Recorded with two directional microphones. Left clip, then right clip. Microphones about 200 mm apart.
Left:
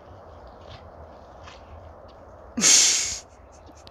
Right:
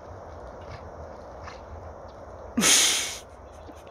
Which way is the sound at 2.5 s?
5° right (ahead or behind).